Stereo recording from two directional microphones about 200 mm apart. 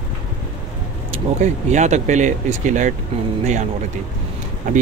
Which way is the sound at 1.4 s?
35° right (ahead or behind).